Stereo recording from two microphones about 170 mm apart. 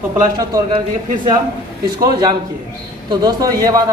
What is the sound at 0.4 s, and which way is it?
A man's voice, 25° right (ahead or behind).